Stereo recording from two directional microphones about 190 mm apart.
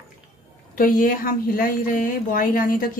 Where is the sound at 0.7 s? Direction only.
45° left (ahead or behind).